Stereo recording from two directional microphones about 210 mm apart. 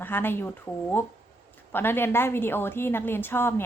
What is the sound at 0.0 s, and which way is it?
A woman's voice, 10° left (ahead or behind).